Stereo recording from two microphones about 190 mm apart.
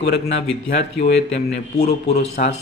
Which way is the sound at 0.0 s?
65° left (ahead or behind).